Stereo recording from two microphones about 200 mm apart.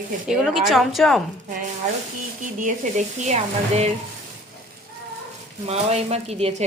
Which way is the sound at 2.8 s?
40° right (ahead or behind).